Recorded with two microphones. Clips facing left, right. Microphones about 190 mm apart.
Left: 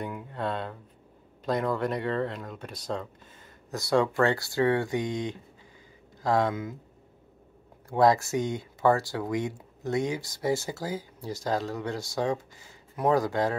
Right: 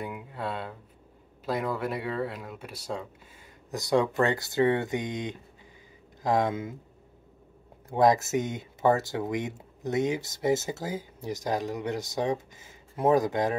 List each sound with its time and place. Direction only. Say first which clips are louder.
0.0 s speech: left 2 dB; 5° right (ahead or behind); by 6.8 s 25° right (ahead or behind)
7.9 s speech: even; 20° right (ahead or behind)